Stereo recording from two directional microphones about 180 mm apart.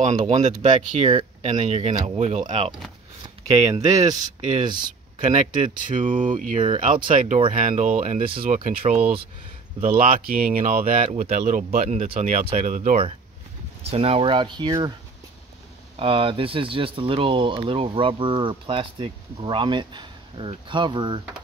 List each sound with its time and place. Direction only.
0.0 s speech: 40° right (ahead or behind)
4.8 s speech: 40° right (ahead or behind)
16.0 s speech: 30° right (ahead or behind)